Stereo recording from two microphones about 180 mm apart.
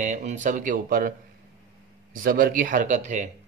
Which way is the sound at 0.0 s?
40° right (ahead or behind).